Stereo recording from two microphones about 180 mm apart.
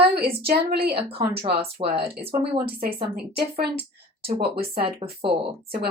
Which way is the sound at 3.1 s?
60° right (ahead or behind).